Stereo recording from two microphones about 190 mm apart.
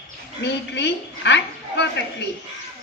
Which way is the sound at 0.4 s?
65° left (ahead or behind).